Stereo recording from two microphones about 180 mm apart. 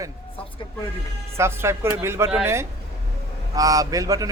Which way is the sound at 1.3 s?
15° right (ahead or behind).